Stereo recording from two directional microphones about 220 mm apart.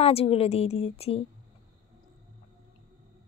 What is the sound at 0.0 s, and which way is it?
A woman's voice, 25° left (ahead or behind).